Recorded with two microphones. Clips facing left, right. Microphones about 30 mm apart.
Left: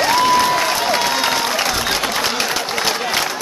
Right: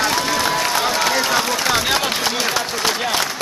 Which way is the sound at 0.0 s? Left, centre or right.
Left.